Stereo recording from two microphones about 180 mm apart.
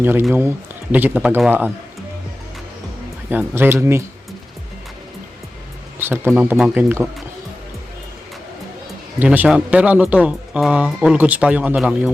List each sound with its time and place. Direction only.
0.0 s speech: 10° right (ahead or behind)
3.2 s speech: 10° right (ahead or behind)
6.0 s speech: 10° right (ahead or behind)
9.1 s speech: 10° right (ahead or behind)